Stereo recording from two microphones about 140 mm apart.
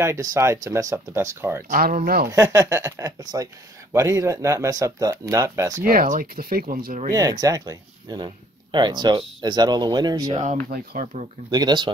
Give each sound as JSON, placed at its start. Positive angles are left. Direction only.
{"t": 0.0, "sound": "speech", "side_deg": -20}
{"t": 1.7, "sound": "speech", "side_deg": -80}
{"t": 2.3, "sound": "speech", "side_deg": -25}
{"t": 5.9, "sound": "speech", "side_deg": -80}
{"t": 7.1, "sound": "speech", "side_deg": -30}
{"t": 10.4, "sound": "speech", "side_deg": -70}
{"t": 11.5, "sound": "speech", "side_deg": -30}